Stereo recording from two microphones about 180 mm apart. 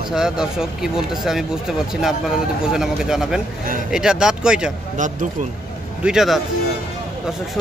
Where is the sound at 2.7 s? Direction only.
5° right (ahead or behind).